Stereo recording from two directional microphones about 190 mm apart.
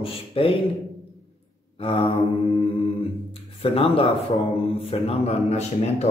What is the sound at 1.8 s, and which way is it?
Mantra, 30° left (ahead or behind).